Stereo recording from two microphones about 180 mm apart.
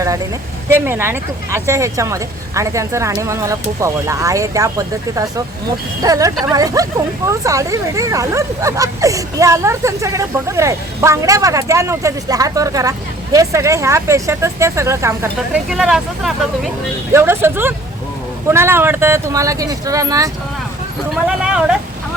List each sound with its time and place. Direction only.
0.7 s speech: 15° right (ahead or behind)
15.7 s speech: centre (ahead or behind)
17.2 s speech: 15° right (ahead or behind)
21.4 s vehicle: 5° right (ahead or behind)